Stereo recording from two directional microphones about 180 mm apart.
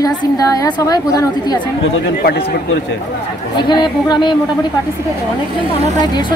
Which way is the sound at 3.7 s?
25° left (ahead or behind).